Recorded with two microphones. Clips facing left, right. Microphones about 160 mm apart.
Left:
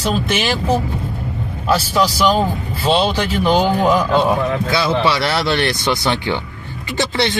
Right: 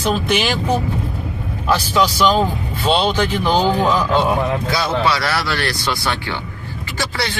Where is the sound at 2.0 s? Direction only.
10° left (ahead or behind).